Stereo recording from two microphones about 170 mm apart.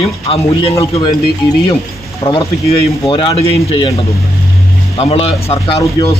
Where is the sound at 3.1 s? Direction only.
30° left (ahead or behind).